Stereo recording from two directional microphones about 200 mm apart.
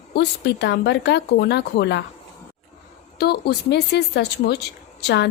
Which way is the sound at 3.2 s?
55° left (ahead or behind).